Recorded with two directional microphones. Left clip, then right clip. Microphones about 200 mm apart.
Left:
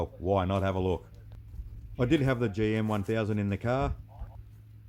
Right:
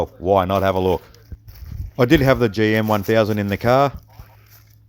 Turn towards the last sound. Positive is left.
turn(degrees=-25)  # may be behind; listen again after turning